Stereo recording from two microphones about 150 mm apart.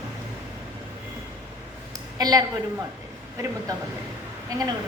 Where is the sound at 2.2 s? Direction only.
25° right (ahead or behind).